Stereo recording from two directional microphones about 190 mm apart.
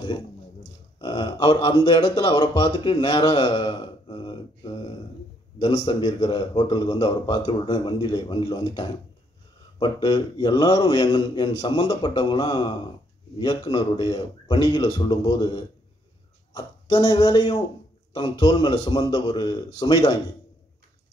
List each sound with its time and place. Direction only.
0.9 s a man's voice: 25° left (ahead or behind)